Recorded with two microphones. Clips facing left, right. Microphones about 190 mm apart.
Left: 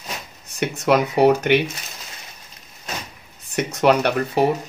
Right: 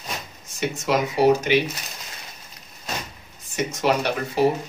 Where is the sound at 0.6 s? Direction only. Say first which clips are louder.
Left 4 dB; 60° left (ahead or behind).